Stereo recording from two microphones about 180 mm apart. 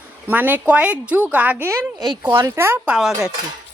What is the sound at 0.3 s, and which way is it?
Speech, 10° right (ahead or behind).